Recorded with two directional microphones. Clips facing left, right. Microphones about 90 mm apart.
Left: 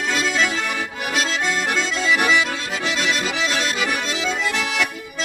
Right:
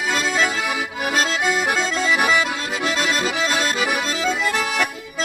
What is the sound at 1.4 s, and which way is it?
Accordion, 10° right (ahead or behind).